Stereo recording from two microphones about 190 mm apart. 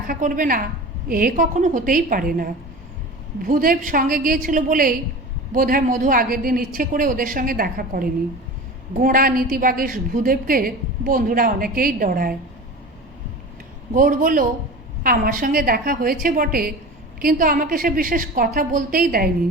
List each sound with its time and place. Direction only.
0.1 s a woman's voice: 45° right (ahead or behind)
13.9 s a woman's voice: 45° right (ahead or behind)